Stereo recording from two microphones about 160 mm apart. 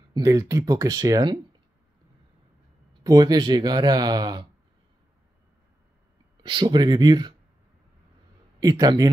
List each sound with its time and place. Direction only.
0.1 s speech: 20° right (ahead or behind)
3.0 s speech: 25° right (ahead or behind)
6.4 s speech: 30° right (ahead or behind)
8.5 s speech: 25° right (ahead or behind)